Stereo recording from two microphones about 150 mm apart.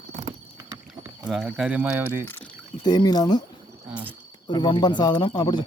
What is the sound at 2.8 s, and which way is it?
Speech, 25° left (ahead or behind).